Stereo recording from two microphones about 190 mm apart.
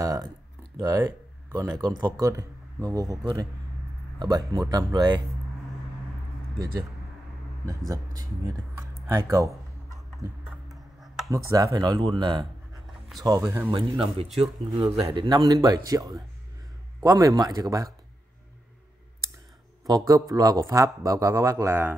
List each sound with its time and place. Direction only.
0.0 s a sound: 20° right (ahead or behind)
0.8 s speech: 10° right (ahead or behind)
7.6 s speech: 15° right (ahead or behind)
11.2 s speech: 15° right (ahead or behind)
14.4 s speech: 30° right (ahead or behind)
19.9 s speech: 15° right (ahead or behind)